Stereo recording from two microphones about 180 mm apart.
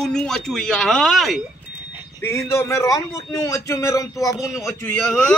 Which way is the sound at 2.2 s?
15° left (ahead or behind).